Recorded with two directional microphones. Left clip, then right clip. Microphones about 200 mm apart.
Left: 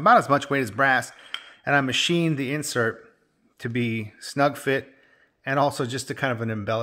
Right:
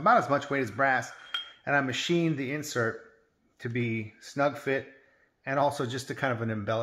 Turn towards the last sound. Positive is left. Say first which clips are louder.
# left 4 dB
turn(degrees=30)  # may be behind; listen again after turning